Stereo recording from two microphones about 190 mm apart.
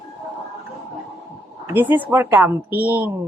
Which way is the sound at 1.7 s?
10° right (ahead or behind).